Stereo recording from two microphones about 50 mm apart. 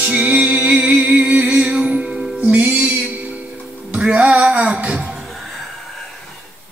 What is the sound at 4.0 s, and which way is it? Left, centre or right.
Music, right.